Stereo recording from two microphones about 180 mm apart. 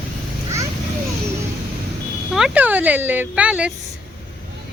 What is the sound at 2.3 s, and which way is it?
Speech, 5° right (ahead or behind).